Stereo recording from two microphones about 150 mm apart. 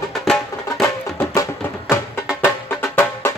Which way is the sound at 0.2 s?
Centre (ahead or behind).